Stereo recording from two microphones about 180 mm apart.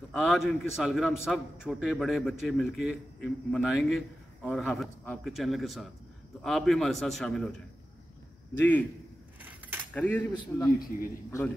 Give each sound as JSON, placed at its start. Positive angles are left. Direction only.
{"t": 0.1, "sound": "a man's voice", "side_deg": 0}
{"t": 8.5, "sound": "speech", "side_deg": 10}
{"t": 9.4, "sound": "keys jangling", "side_deg": -10}
{"t": 9.9, "sound": "speech", "side_deg": 10}
{"t": 10.3, "sound": "a man's voice", "side_deg": 25}